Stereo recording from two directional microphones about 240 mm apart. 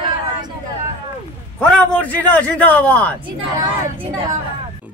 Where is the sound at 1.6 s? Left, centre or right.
Centre.